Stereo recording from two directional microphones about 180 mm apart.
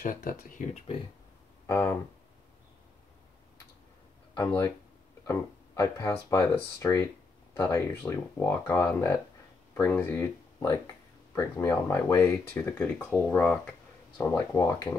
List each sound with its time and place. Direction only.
0.0 s speech: 50° left (ahead or behind)
1.7 s speech: 15° left (ahead or behind)
5.2 s speech: 15° left (ahead or behind)
14.3 s speech: 15° left (ahead or behind)